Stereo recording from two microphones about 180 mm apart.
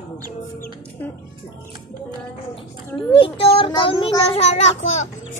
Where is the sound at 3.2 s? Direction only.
30° left (ahead or behind).